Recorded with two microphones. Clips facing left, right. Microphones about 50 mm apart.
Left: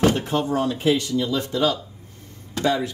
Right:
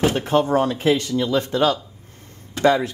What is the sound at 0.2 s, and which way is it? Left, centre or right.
Speech, right.